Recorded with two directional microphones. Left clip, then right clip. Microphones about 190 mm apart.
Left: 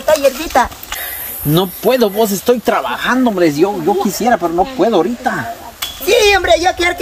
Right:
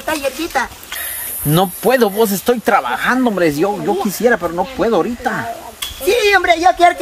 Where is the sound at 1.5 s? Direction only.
10° right (ahead or behind).